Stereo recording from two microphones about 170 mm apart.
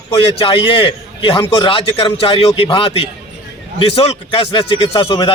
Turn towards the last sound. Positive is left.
turn(degrees=30)  # may be behind; listen again after turning